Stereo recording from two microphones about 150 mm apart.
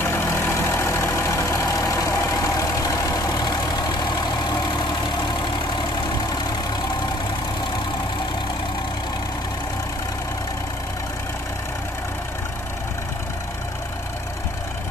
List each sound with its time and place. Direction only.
0.0 s vehicle: 15° left (ahead or behind)